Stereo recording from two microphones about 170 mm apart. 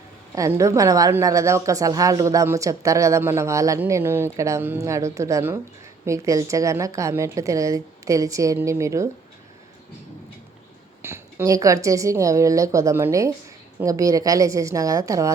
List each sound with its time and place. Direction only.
0.3 s a woman's voice: 20° right (ahead or behind)
11.0 s a woman's voice: 15° right (ahead or behind)